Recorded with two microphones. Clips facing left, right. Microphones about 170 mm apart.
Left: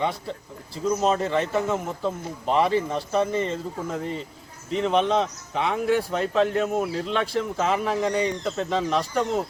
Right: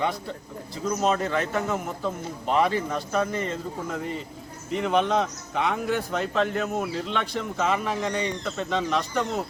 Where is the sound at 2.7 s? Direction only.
30° left (ahead or behind).